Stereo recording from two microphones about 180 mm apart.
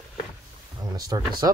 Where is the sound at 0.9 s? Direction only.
20° right (ahead or behind).